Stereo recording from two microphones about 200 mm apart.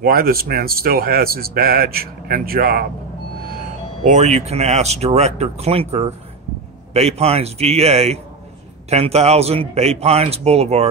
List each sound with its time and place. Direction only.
0.0 s a man's voice: 50° right (ahead or behind)
4.0 s speech: 35° right (ahead or behind)